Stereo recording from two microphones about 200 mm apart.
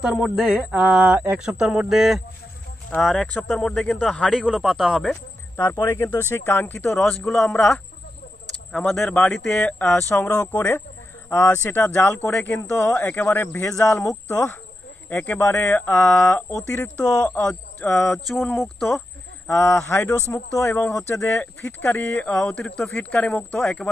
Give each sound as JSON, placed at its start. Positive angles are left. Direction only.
{"t": 0.0, "sound": "speech", "side_deg": 0}
{"t": 5.6, "sound": "a man's voice", "side_deg": 15}
{"t": 17.0, "sound": "a man's voice", "side_deg": 20}
{"t": 17.9, "sound": "a man's voice", "side_deg": 0}